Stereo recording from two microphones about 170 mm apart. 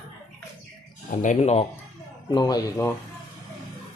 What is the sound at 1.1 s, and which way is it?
Speech, 50° left (ahead or behind).